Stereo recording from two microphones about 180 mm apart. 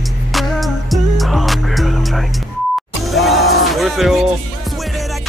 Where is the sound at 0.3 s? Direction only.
Centre (ahead or behind).